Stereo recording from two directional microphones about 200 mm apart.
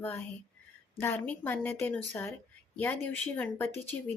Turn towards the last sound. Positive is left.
turn(degrees=10)  # may be behind; listen again after turning